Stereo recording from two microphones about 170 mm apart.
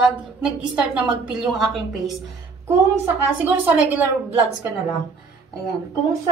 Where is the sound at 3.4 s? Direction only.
10° right (ahead or behind).